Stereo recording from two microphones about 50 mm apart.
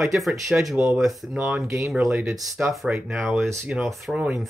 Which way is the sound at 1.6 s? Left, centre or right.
Right.